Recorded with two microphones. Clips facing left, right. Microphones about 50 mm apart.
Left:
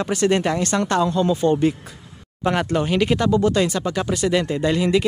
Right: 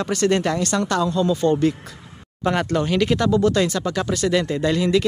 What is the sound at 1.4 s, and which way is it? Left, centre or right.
Speech, centre.